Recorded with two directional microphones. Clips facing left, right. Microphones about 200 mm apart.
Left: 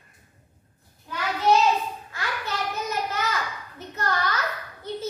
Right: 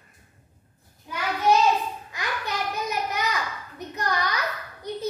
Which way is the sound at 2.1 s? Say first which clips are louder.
Even; 15° right (ahead or behind).